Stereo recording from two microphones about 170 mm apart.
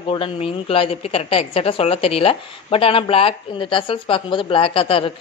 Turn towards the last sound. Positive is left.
turn(degrees=30)  # may be behind; listen again after turning